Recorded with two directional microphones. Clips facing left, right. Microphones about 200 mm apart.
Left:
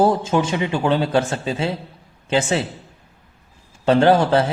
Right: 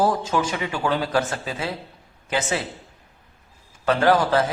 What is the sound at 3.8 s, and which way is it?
Speech, 25° left (ahead or behind).